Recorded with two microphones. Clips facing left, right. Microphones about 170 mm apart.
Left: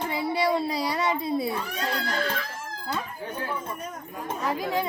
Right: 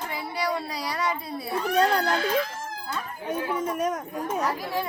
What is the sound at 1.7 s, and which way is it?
Speech, 60° right (ahead or behind).